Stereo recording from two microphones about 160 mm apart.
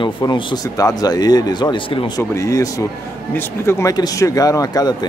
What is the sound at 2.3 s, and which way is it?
Speech, 20° left (ahead or behind).